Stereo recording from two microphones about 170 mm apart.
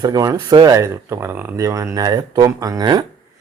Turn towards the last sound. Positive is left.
turn(degrees=-20)  # may be behind; listen again after turning